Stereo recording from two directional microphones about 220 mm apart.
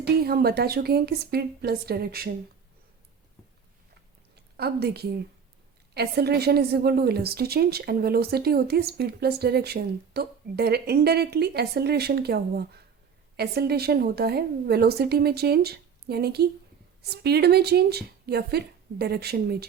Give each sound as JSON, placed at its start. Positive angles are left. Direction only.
{"t": 0.0, "sound": "a woman's voice", "side_deg": -45}
{"t": 4.5, "sound": "a woman's voice", "side_deg": -45}